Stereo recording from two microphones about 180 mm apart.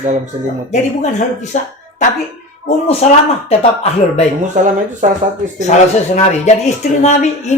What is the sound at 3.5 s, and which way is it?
Speech, 35° left (ahead or behind).